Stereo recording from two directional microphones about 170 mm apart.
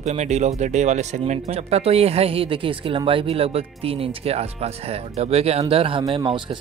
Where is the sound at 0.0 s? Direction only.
40° right (ahead or behind).